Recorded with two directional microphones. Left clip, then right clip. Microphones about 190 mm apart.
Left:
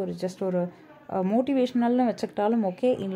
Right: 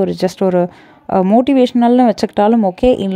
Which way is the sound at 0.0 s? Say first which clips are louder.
Right 15 dB; 45° right (ahead or behind).